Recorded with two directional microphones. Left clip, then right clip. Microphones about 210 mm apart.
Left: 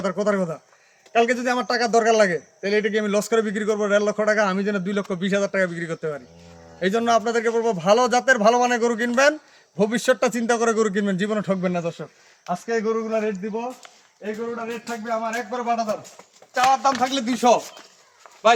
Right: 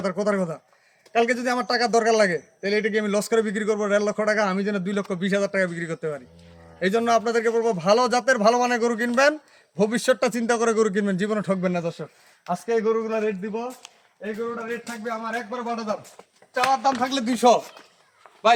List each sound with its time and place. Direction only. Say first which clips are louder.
0.0 s a man's voice: left 2 dB; 10° right (ahead or behind); by 13.3 s 30° right (ahead or behind)
14.8 s music: left 4 dB; 35° right (ahead or behind)
16.6 s speech: left 3 dB; 20° right (ahead or behind)